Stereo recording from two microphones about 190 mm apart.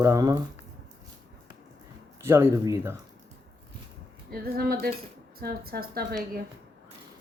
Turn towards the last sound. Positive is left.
turn(degrees=-50)  # may be behind; listen again after turning